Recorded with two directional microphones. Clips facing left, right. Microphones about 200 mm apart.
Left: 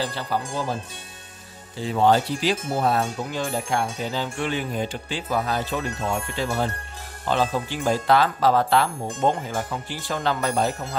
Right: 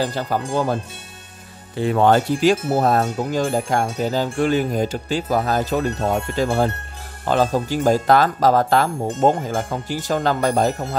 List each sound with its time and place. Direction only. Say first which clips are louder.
0.0 s speech: right 4 dB; 45° right (ahead or behind)
1.8 s speech: right 4 dB; 60° right (ahead or behind)